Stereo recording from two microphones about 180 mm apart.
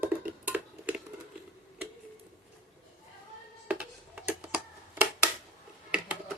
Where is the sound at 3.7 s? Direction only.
5° right (ahead or behind).